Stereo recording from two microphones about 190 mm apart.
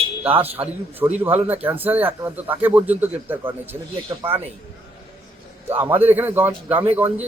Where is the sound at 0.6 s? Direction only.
10° right (ahead or behind).